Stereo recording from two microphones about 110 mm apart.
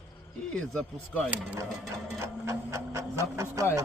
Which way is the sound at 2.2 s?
25° right (ahead or behind).